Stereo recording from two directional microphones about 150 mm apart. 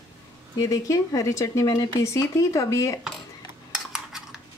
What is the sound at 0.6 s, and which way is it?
Speech, 20° left (ahead or behind).